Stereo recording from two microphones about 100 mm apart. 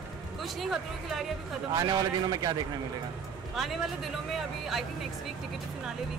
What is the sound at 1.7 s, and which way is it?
Speech, 45° right (ahead or behind).